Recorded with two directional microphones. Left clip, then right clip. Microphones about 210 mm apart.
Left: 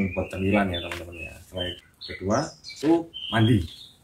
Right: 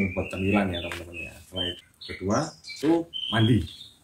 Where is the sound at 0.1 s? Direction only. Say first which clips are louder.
Left 1 dB; 20° left (ahead or behind).